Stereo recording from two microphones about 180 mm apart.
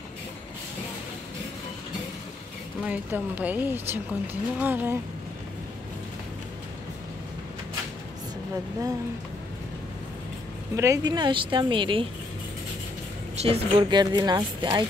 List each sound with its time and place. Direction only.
2.8 s speech: 10° right (ahead or behind)
10.8 s speech: 20° right (ahead or behind)
13.4 s speech: 30° right (ahead or behind)